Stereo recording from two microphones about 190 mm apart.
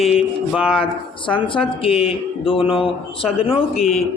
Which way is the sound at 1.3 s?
25° left (ahead or behind).